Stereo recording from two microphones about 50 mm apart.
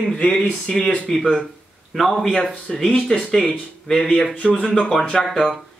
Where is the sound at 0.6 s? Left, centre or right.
Centre.